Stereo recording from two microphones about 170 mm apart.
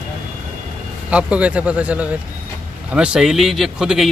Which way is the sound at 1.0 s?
5° right (ahead or behind).